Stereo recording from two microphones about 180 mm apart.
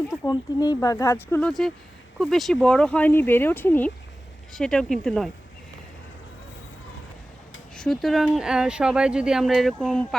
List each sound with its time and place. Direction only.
0.3 s speech: 20° left (ahead or behind); by 5.3 s 5° left (ahead or behind)
7.8 s speech: centre (ahead or behind)